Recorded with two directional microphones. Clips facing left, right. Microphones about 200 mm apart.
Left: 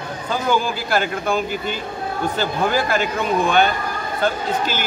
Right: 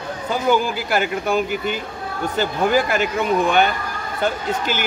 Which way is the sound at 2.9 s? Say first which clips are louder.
Right 1 dB; 15° right (ahead or behind).